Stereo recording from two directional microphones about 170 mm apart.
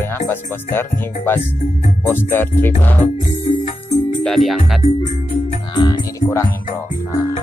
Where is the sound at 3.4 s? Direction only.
45° left (ahead or behind).